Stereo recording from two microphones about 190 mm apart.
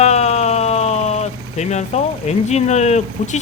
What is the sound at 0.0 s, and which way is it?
Vehicle, 35° left (ahead or behind).